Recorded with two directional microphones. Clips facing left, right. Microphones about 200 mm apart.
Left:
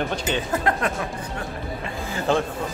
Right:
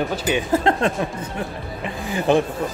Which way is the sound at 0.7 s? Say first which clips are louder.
Right 4 dB; 25° right (ahead or behind).